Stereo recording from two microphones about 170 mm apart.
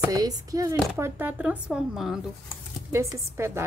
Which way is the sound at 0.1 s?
20° right (ahead or behind).